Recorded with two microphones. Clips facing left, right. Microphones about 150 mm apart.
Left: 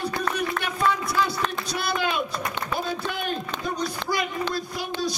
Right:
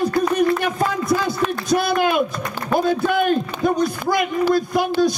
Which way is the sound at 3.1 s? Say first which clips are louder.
Right 11 dB; 55° right (ahead or behind).